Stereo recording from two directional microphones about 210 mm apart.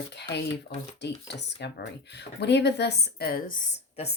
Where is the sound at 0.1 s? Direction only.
55° left (ahead or behind).